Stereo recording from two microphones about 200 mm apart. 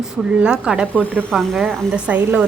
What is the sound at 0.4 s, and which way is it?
Speech, 5° right (ahead or behind).